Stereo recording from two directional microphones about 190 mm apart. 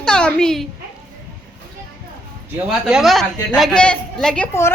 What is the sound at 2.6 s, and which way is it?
A woman's voice, 5° right (ahead or behind).